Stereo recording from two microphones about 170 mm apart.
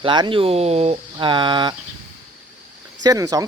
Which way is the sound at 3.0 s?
20° right (ahead or behind).